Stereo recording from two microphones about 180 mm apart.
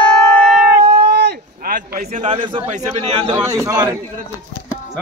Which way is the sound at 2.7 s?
40° right (ahead or behind).